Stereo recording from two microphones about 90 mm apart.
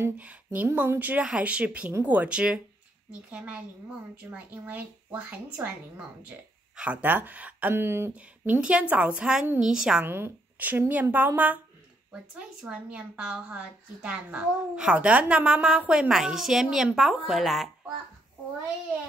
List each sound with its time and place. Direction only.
0.2 s a woman's voice: 15° right (ahead or behind)
8.5 s a woman's voice: 15° right (ahead or behind)
10.0 s a woman's voice: 25° right (ahead or behind); by 17.6 s centre (ahead or behind)